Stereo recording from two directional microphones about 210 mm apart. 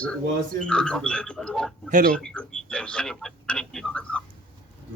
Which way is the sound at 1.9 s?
40° right (ahead or behind).